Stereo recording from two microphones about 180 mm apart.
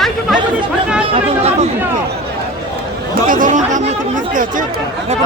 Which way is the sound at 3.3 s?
45° right (ahead or behind).